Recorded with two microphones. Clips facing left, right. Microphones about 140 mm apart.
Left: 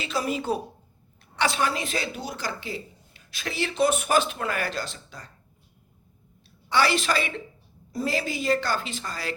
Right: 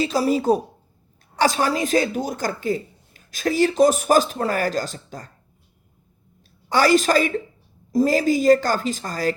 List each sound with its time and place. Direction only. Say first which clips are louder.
0.0 s speech: right 8 dB; 35° right (ahead or behind)
6.7 s a woman's voice: right 6 dB; 45° right (ahead or behind)